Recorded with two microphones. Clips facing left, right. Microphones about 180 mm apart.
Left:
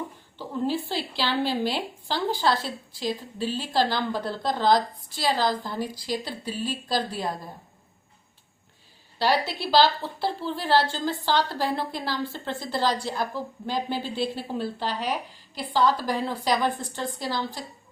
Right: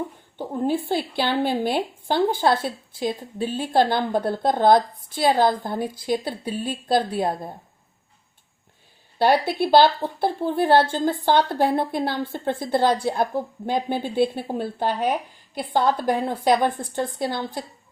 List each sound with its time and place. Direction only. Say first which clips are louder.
0.3 s a woman's voice: right 4 dB; 55° right (ahead or behind)
9.1 s a woman's voice: right 5 dB; 55° right (ahead or behind)